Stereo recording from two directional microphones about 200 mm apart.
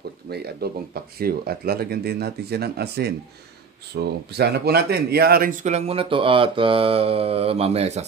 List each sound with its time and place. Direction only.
0.3 s speech: 55° right (ahead or behind); by 8.0 s 30° right (ahead or behind)